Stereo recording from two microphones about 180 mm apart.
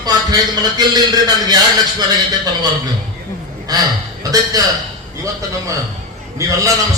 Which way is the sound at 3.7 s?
20° right (ahead or behind).